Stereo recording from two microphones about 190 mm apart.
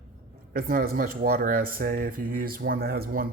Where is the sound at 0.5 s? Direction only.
50° right (ahead or behind).